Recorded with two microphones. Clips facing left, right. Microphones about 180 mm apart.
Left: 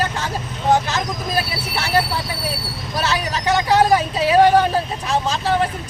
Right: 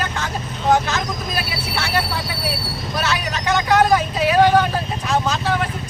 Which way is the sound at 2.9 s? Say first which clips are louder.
Left 2 dB; 35° left (ahead or behind).